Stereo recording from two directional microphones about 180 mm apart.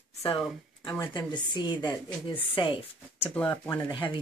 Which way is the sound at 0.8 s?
25° left (ahead or behind).